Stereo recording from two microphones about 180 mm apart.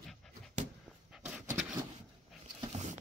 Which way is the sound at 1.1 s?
10° right (ahead or behind).